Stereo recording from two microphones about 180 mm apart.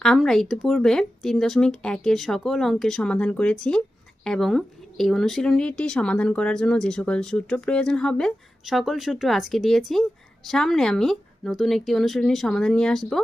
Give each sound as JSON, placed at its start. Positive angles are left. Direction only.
{"t": 0.0, "sound": "speech", "side_deg": 5}